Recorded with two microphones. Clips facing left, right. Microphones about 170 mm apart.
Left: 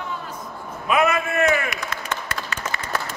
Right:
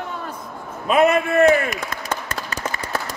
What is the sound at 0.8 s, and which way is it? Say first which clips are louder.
Speech: right 4 dB; 30° right (ahead or behind).